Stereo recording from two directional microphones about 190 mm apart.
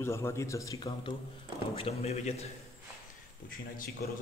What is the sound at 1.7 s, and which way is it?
Speech, 30° left (ahead or behind).